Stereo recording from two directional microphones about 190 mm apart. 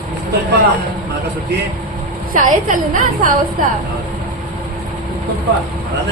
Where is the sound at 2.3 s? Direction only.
40° right (ahead or behind).